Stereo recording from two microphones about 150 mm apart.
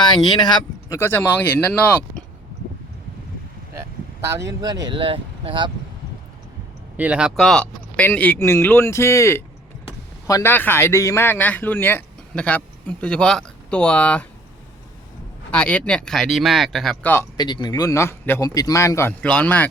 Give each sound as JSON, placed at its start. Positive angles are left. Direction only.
{"t": 0.0, "sound": "speech", "side_deg": 30}
{"t": 0.9, "sound": "speech", "side_deg": 15}
{"t": 3.8, "sound": "speech", "side_deg": -20}
{"t": 6.9, "sound": "speech", "side_deg": -10}
{"t": 15.5, "sound": "speech", "side_deg": 5}
{"t": 17.3, "sound": "speech", "side_deg": 30}
{"t": 19.2, "sound": "speech", "side_deg": 10}